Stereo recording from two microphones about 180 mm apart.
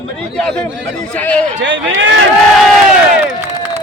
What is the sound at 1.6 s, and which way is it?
Speech, 85° right.